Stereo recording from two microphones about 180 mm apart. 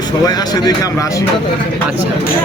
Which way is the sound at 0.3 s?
20° left (ahead or behind).